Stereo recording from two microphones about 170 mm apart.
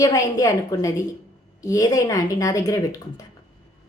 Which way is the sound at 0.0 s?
20° left (ahead or behind).